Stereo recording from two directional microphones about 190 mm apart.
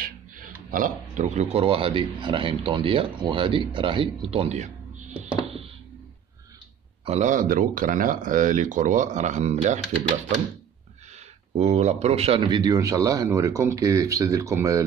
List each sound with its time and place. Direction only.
0.7 s speech: 45° right (ahead or behind)
7.1 s speech: 40° right (ahead or behind)
11.5 s speech: 35° right (ahead or behind); by 14.9 s 15° right (ahead or behind)